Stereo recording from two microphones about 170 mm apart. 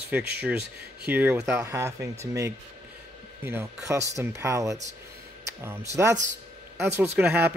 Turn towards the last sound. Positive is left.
turn(degrees=-10)  # may be behind; listen again after turning